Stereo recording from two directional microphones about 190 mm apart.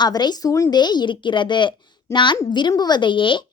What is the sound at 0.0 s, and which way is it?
A woman's voice, 20° left (ahead or behind).